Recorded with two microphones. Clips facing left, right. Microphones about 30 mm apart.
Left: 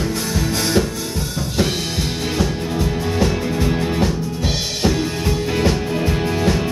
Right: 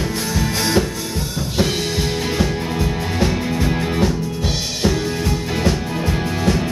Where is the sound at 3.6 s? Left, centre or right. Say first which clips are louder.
Even; centre.